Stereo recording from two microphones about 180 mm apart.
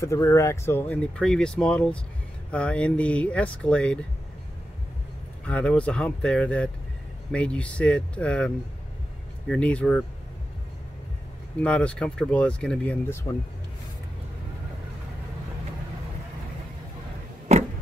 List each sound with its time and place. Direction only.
0.0 s speech: 15° left (ahead or behind)
5.4 s speech: 5° left (ahead or behind)
11.6 s speech: 5° left (ahead or behind)
17.5 s a sound: 40° right (ahead or behind)